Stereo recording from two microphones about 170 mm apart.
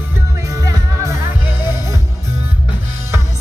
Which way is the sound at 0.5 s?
20° right (ahead or behind).